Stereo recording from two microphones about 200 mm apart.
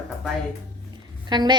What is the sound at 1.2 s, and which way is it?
Speech, 20° right (ahead or behind).